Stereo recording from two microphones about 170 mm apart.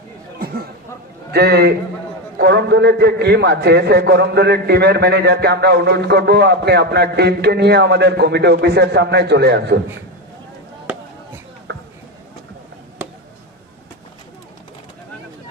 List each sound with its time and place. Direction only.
1.3 s a man's voice: 70° right (ahead or behind)